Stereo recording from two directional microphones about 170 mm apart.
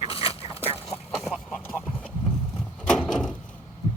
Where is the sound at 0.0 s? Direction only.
35° left (ahead or behind).